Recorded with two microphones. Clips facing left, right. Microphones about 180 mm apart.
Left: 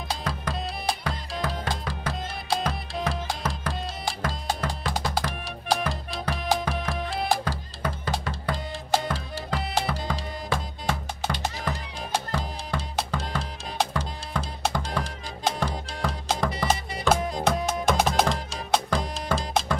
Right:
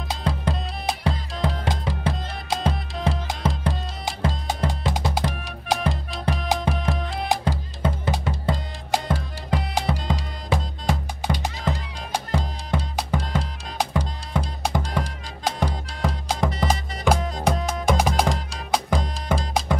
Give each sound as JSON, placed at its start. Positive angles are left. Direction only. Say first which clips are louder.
{"t": 0.1, "sound": "music", "louder": "right 5 dB", "side_deg": -25}
{"t": 17.8, "sound": "music", "louder": "right 2 dB", "side_deg": -10}